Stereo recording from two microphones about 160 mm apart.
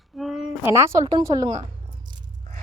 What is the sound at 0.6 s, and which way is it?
Speech, 15° right (ahead or behind).